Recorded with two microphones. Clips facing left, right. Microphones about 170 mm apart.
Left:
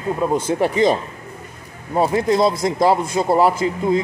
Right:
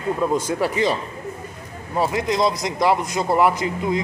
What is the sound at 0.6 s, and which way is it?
Speech, 40° left (ahead or behind).